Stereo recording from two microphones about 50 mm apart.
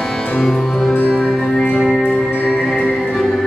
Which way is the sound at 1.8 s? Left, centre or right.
Centre.